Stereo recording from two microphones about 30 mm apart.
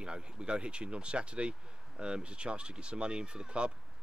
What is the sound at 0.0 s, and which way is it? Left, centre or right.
Speech, right.